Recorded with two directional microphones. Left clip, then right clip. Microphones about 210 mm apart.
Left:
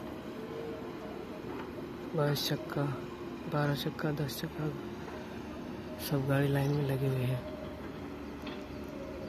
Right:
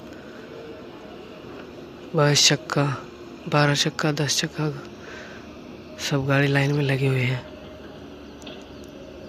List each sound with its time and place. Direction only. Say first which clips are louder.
2.1 s a man's voice: right 14 dB; 25° right (ahead or behind)
6.0 s a man's voice: right 10 dB; 20° right (ahead or behind)